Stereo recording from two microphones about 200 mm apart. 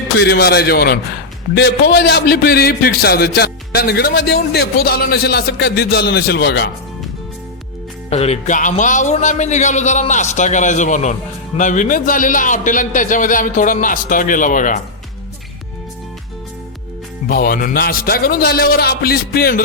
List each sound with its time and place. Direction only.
0.2 s a man's voice: 55° left (ahead or behind)
8.1 s speech: 35° left (ahead or behind)
17.2 s a man's voice: 45° left (ahead or behind)